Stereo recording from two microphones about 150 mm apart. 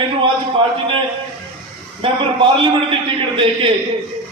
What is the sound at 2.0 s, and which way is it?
Speech, 35° right (ahead or behind).